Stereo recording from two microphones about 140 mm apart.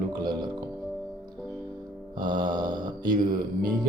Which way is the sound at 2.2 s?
30° right (ahead or behind).